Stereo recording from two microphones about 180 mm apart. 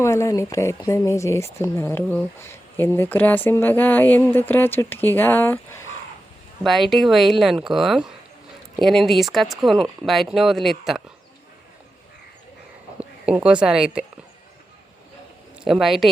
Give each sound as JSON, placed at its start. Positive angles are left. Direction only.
{"t": 0.0, "sound": "speech", "side_deg": 15}
{"t": 6.6, "sound": "speech", "side_deg": 0}
{"t": 13.0, "sound": "speech", "side_deg": -5}
{"t": 15.6, "sound": "speech", "side_deg": 0}